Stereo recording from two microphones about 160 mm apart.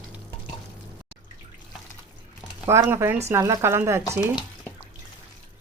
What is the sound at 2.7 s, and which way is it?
Speech, 15° right (ahead or behind).